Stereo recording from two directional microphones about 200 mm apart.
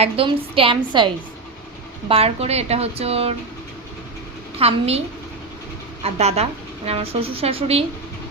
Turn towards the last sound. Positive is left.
turn(degrees=-30)  # may be behind; listen again after turning